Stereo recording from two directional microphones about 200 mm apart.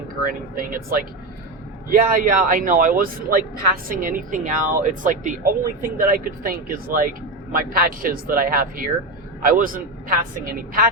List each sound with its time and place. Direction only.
0.3 s a woman's voice: 45° right (ahead or behind)